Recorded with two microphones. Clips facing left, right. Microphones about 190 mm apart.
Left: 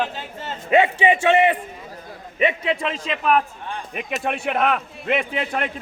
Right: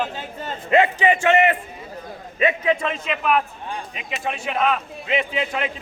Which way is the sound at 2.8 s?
35° left (ahead or behind).